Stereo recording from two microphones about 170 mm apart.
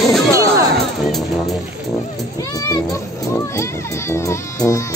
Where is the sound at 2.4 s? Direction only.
20° left (ahead or behind).